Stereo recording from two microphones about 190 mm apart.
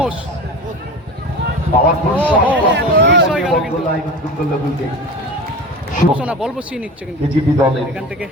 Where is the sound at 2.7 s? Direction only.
65° right (ahead or behind).